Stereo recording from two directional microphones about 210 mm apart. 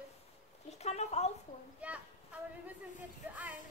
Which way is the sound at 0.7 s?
30° left (ahead or behind).